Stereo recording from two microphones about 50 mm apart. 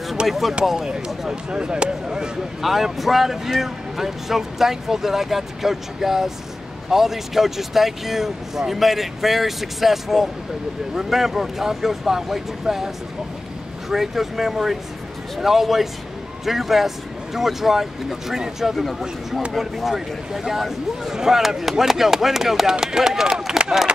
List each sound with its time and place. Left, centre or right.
0.3 s speech: centre
0.8 s speech: centre
2.6 s speech: centre